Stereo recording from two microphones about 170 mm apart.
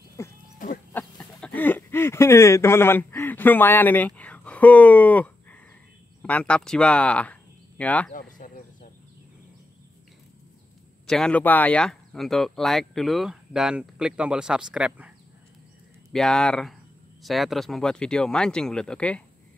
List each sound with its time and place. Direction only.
0.2 s livestock: 15° left (ahead or behind)
0.6 s livestock: 55° left (ahead or behind)
0.9 s a sound: 5° left (ahead or behind)
6.2 s speech: 5° left (ahead or behind)
8.1 s a sound: 50° left (ahead or behind)
11.1 s speech: 5° left (ahead or behind)